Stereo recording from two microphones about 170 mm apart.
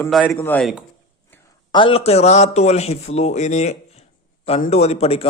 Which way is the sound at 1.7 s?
30° left (ahead or behind).